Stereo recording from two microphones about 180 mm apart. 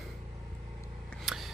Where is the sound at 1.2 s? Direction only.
Centre (ahead or behind).